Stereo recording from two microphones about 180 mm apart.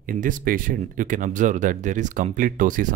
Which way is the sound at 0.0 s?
50° right (ahead or behind).